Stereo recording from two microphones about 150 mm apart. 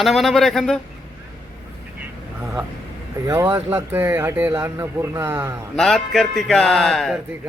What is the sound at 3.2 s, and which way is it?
Speech, 20° right (ahead or behind).